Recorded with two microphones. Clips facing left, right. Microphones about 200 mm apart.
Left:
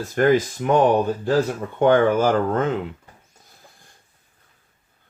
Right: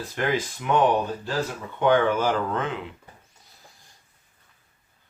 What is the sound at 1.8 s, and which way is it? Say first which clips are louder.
Speech: left 4 dB; 45° left (ahead or behind).